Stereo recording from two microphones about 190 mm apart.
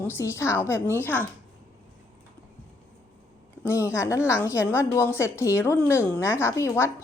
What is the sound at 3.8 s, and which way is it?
A woman's voice, 15° left (ahead or behind).